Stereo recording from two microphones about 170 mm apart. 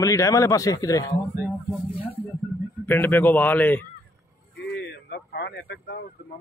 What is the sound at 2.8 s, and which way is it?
A man's voice, 10° left (ahead or behind).